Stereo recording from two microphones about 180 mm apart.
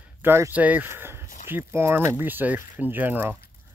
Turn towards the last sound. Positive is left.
turn(degrees=-10)  # may be behind; listen again after turning